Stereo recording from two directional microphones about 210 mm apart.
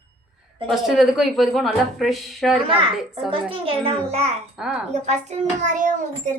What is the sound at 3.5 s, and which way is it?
Speech, 25° right (ahead or behind).